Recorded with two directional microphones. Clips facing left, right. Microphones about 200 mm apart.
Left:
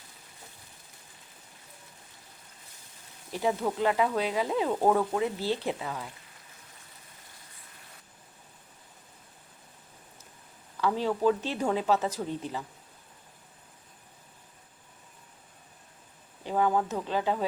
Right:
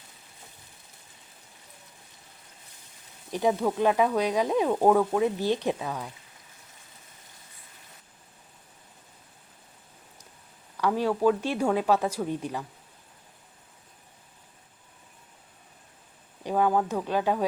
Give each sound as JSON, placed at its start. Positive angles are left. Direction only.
{"t": 3.3, "sound": "speech", "side_deg": -15}
{"t": 10.8, "sound": "speech", "side_deg": -10}
{"t": 16.4, "sound": "speech", "side_deg": -15}